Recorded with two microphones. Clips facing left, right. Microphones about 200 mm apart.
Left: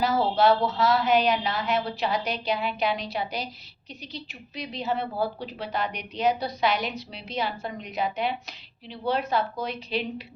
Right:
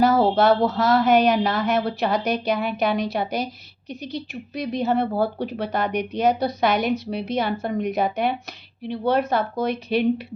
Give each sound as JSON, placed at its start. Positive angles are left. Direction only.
{"t": 0.0, "sound": "a woman's voice", "side_deg": -45}